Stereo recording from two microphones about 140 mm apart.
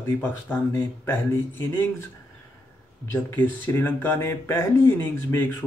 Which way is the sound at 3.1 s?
15° left (ahead or behind).